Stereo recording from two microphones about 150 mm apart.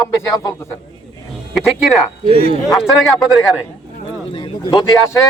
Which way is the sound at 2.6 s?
Centre (ahead or behind).